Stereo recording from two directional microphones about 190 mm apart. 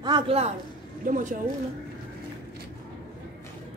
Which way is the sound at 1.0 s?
45° right (ahead or behind).